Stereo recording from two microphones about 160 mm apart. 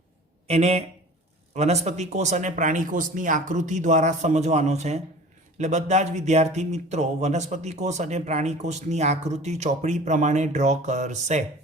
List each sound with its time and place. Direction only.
0.4 s a man's voice: 40° right (ahead or behind)